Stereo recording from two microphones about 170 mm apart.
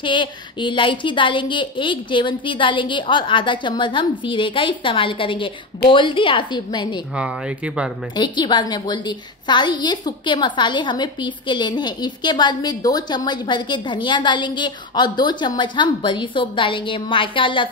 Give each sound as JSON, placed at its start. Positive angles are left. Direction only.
{"t": 0.0, "sound": "a woman's voice", "side_deg": 30}
{"t": 7.2, "sound": "speech", "side_deg": -5}
{"t": 8.1, "sound": "a woman's voice", "side_deg": 25}